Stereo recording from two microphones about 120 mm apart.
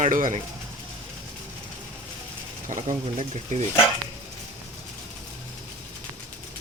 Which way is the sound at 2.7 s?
75° right (ahead or behind).